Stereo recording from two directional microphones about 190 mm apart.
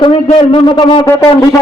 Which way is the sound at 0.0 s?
25° left (ahead or behind).